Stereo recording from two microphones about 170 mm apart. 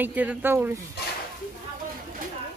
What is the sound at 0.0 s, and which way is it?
Speech, 10° right (ahead or behind).